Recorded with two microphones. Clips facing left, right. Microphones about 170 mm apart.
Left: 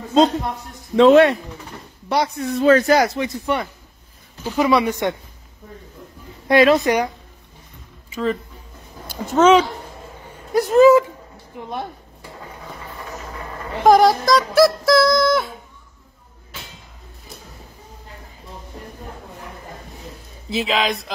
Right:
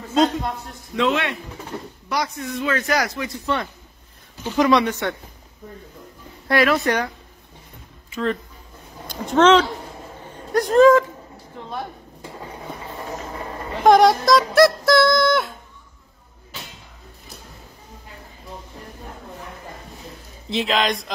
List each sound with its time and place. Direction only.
0.9 s speech: 40° left (ahead or behind)
4.5 s speech: 5° left (ahead or behind)
6.4 s speech: 20° left (ahead or behind)
9.0 s speech: 5° left (ahead or behind)
10.5 s synthetic singing: 5° left (ahead or behind)
11.6 s speech: 15° left (ahead or behind)
13.8 s synthetic singing: centre (ahead or behind)
20.4 s synthetic singing: 5° left (ahead or behind)